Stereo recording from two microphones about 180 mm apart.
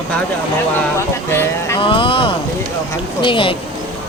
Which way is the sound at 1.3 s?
15° left (ahead or behind).